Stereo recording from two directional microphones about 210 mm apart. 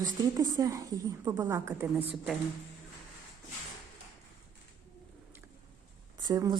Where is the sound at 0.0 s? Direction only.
15° right (ahead or behind).